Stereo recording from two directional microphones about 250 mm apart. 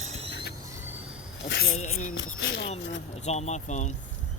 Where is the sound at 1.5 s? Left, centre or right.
Left.